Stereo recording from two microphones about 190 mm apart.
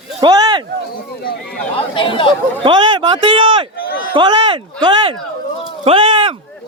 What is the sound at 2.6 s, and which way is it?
Speech, 25° right (ahead or behind).